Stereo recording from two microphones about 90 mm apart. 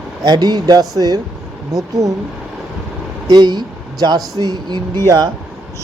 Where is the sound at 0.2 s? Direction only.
50° right (ahead or behind).